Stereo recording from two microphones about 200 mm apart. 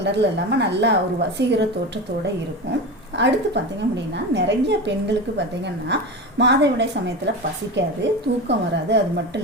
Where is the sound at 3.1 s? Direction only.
60° right (ahead or behind).